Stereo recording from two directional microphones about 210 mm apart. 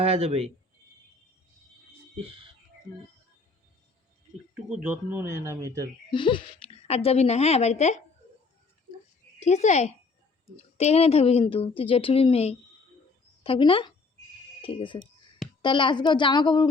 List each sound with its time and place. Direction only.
0.0 s speech: 30° right (ahead or behind)
4.7 s speech: 5° right (ahead or behind)
6.1 s a woman's voice: 25° left (ahead or behind)
9.4 s a woman's voice: 35° left (ahead or behind)